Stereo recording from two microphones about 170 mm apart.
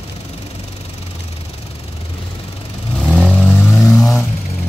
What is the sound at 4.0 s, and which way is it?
Vehicle, 15° left (ahead or behind).